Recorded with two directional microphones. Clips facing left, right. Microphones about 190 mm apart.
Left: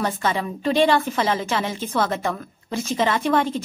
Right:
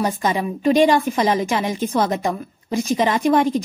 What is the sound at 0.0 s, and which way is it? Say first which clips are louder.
A woman's voice: right 3 dB; 15° right (ahead or behind).